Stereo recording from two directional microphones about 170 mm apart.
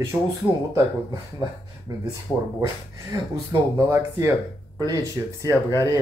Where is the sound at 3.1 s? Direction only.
15° right (ahead or behind).